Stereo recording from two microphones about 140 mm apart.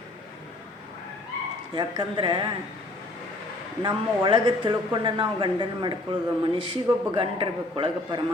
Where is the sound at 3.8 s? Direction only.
35° right (ahead or behind).